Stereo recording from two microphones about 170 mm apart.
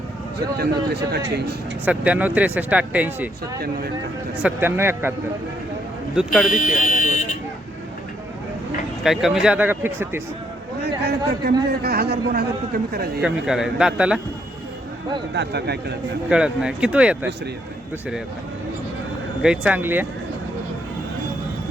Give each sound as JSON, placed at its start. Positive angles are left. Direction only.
{"t": 0.6, "sound": "speech", "side_deg": -70}
{"t": 1.8, "sound": "speech", "side_deg": -10}
{"t": 4.4, "sound": "speech", "side_deg": -15}
{"t": 6.1, "sound": "speech", "side_deg": 0}
{"t": 6.5, "sound": "speech", "side_deg": 50}
{"t": 9.0, "sound": "speech", "side_deg": 0}
{"t": 10.8, "sound": "speech", "side_deg": -70}
{"t": 13.2, "sound": "speech", "side_deg": -5}
{"t": 15.3, "sound": "speech", "side_deg": -80}
{"t": 16.3, "sound": "speech", "side_deg": -5}
{"t": 19.4, "sound": "speech", "side_deg": -5}